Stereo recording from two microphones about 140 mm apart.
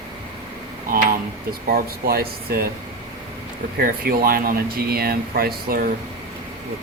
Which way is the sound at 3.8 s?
90° right.